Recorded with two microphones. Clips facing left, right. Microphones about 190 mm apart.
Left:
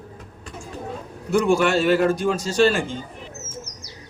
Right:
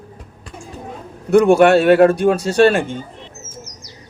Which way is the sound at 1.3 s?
60° right (ahead or behind).